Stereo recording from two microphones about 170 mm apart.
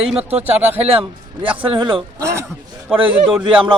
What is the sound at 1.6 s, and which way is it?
Speech, 30° right (ahead or behind).